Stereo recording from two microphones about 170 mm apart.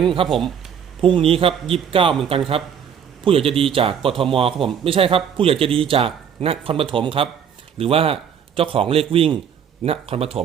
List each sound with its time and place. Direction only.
0.0 s speech: 30° right (ahead or behind)
0.3 s speech: centre (ahead or behind)
1.0 s a man's voice: 30° right (ahead or behind)
3.2 s a man's voice: 35° right (ahead or behind)